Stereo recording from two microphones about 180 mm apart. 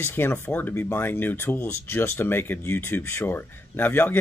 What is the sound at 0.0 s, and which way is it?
Speech, 10° left (ahead or behind).